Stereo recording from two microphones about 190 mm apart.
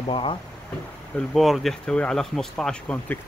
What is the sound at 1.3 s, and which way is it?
Speech, centre (ahead or behind).